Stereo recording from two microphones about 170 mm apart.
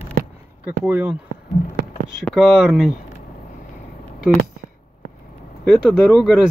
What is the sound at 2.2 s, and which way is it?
Speech, centre (ahead or behind).